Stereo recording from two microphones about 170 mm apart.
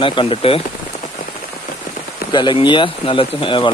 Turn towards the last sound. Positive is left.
turn(degrees=30)  # may be behind; listen again after turning